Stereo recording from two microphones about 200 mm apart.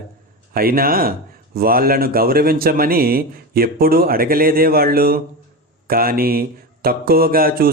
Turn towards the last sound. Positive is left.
turn(degrees=-50)  # may be behind; listen again after turning